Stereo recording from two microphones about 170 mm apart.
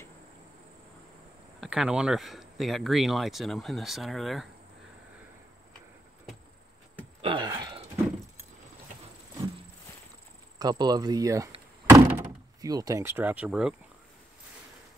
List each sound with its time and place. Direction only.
1.6 s speech: 5° right (ahead or behind)
7.2 s a sound: 30° right (ahead or behind)
10.6 s speech: 25° right (ahead or behind)
11.9 s door: 20° right (ahead or behind); by 13.7 s 5° right (ahead or behind)